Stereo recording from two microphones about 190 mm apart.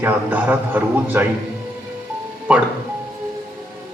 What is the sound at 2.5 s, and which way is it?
Music, 5° right (ahead or behind).